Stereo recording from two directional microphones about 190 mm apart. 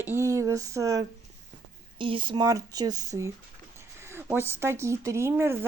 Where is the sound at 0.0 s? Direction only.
15° right (ahead or behind).